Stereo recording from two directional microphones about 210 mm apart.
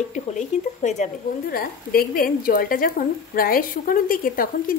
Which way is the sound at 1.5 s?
45° left (ahead or behind).